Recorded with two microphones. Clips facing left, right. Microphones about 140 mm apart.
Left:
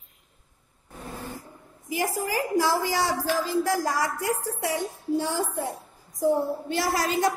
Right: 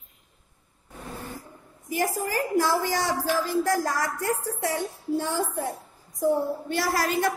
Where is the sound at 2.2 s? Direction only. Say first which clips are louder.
Left 1 dB; 15° left (ahead or behind).